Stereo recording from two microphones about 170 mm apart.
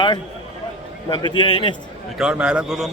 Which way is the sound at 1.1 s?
25° left (ahead or behind).